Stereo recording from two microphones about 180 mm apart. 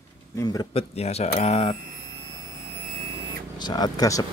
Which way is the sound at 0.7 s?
35° left (ahead or behind).